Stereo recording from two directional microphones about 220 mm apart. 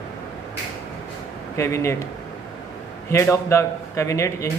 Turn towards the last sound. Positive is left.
turn(degrees=15)  # may be behind; listen again after turning